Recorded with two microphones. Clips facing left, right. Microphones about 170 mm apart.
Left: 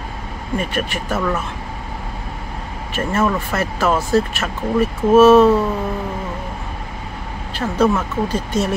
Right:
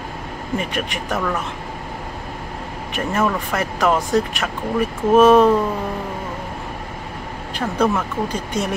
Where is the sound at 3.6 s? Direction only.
15° right (ahead or behind).